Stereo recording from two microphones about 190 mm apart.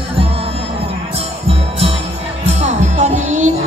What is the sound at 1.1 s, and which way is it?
Music, 30° right (ahead or behind).